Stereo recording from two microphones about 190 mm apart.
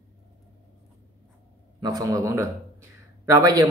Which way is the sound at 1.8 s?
20° right (ahead or behind).